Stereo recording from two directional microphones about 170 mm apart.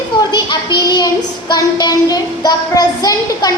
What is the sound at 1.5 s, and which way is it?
A child's voice, 25° left (ahead or behind).